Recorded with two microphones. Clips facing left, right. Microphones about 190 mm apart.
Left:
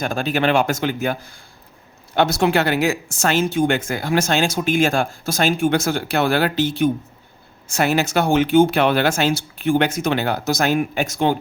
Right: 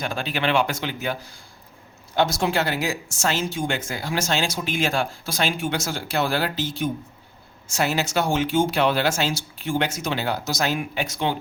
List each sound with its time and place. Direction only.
0.0 s a man's voice: 45° left (ahead or behind)
2.1 s speech: 65° left (ahead or behind); by 11.3 s 45° left (ahead or behind)